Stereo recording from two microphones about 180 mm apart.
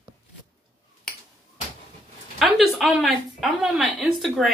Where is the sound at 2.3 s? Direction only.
Centre (ahead or behind).